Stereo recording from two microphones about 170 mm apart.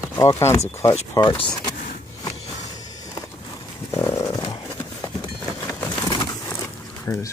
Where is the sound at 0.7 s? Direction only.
15° left (ahead or behind).